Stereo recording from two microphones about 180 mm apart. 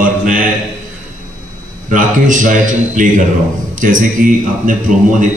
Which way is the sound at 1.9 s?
45° right (ahead or behind).